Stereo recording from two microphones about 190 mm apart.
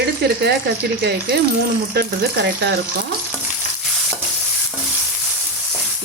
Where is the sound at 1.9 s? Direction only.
60° right (ahead or behind).